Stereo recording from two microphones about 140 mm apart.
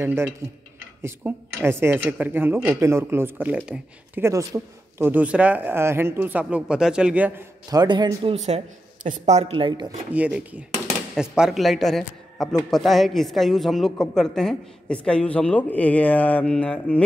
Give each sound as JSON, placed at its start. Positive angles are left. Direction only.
{"t": 0.0, "sound": "speech", "side_deg": -15}
{"t": 4.2, "sound": "speech", "side_deg": -25}
{"t": 7.7, "sound": "a woman's voice", "side_deg": -30}
{"t": 10.1, "sound": "a woman's voice", "side_deg": -10}